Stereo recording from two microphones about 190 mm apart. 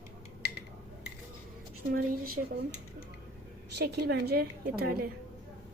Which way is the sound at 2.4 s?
55° right (ahead or behind).